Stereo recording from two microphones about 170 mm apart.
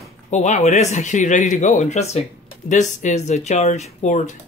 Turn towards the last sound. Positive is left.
turn(degrees=45)  # may be behind; listen again after turning